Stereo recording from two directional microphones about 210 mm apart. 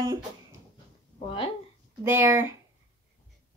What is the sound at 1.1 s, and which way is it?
Speech, 25° left (ahead or behind).